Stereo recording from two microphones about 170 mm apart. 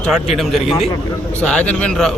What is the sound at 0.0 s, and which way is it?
Speech, centre (ahead or behind).